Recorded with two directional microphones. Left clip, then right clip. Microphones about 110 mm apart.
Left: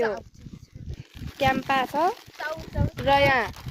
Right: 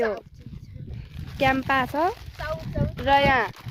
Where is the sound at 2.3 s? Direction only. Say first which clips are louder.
Right 1 dB; 5° right (ahead or behind).